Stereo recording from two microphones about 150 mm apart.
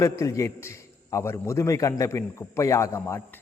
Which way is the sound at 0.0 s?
20° left (ahead or behind).